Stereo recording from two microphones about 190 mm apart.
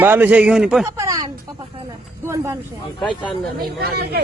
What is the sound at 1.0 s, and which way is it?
Speech, 20° right (ahead or behind).